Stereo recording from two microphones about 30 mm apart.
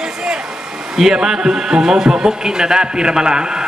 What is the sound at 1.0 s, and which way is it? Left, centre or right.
A man's voice, centre.